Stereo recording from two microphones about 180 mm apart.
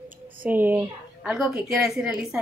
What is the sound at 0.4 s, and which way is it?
A woman's voice, 10° right (ahead or behind).